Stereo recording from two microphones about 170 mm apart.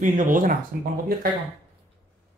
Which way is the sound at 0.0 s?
50° right (ahead or behind).